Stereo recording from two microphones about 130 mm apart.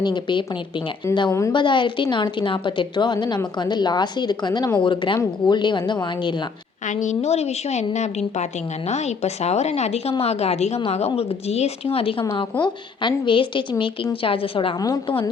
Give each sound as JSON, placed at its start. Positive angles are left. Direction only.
{"t": 0.0, "sound": "a woman's voice", "side_deg": 35}
{"t": 1.0, "sound": "a woman's voice", "side_deg": 20}
{"t": 1.5, "sound": "a woman's voice", "side_deg": 40}
{"t": 6.8, "sound": "a woman's voice", "side_deg": 70}